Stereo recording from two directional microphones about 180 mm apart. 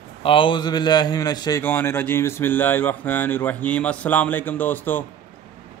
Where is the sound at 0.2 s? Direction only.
30° left (ahead or behind).